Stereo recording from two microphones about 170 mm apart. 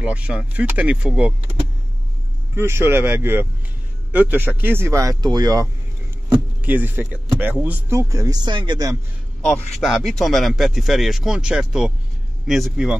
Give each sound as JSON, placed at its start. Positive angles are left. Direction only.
{"t": 0.0, "sound": "speech", "side_deg": -5}
{"t": 6.6, "sound": "speech", "side_deg": -10}
{"t": 9.4, "sound": "a man's voice", "side_deg": 5}